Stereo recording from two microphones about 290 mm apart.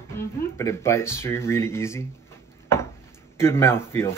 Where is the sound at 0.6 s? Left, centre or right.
Centre.